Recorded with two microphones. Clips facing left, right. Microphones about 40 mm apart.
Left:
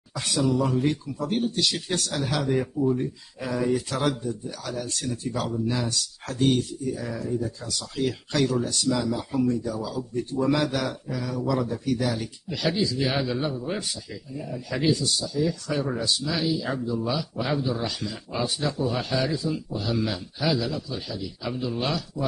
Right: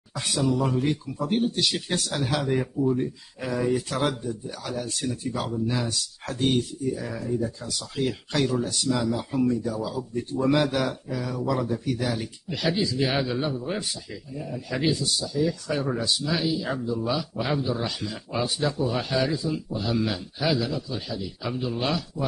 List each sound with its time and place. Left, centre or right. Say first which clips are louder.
0.2 s a man's voice: left 1 dB; centre
5.5 s a man's voice: even; centre
9.8 s a man's voice: even; centre